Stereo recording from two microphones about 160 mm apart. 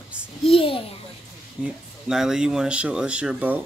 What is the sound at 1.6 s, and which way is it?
Speech, 5° right (ahead or behind).